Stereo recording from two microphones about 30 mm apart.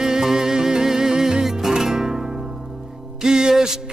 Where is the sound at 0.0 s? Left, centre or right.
Centre.